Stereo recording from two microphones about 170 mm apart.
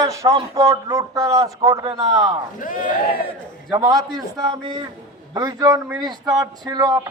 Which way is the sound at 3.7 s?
25° right (ahead or behind).